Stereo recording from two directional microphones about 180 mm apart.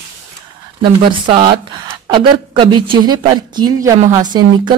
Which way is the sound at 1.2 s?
25° right (ahead or behind).